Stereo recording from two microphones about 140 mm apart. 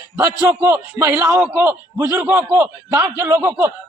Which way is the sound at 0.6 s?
15° right (ahead or behind).